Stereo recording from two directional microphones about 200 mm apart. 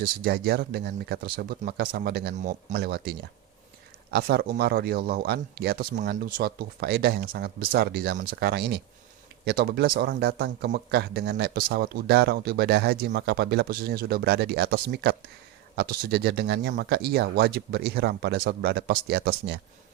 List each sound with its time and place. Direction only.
0.0 s speech: 50° right (ahead or behind)